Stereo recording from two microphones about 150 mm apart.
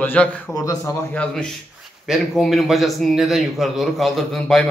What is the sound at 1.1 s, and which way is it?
A man's voice, 5° left (ahead or behind).